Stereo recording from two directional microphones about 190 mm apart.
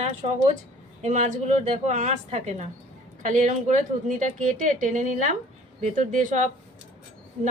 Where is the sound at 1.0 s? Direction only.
40° right (ahead or behind).